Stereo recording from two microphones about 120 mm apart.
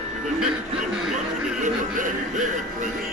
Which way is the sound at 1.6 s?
90° right.